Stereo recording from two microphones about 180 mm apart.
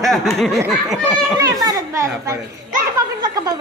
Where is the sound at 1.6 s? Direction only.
20° right (ahead or behind).